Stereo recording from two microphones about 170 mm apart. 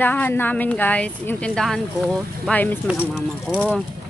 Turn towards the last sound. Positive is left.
turn(degrees=0)  # may be behind; listen again after turning